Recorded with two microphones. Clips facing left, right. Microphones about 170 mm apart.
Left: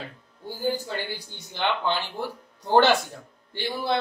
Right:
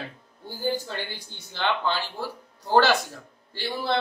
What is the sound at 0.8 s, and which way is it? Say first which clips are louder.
A man's voice: left 2 dB; 10° left (ahead or behind).